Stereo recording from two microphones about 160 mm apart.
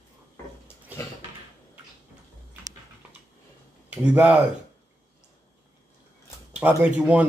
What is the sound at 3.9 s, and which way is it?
Speech, 10° right (ahead or behind).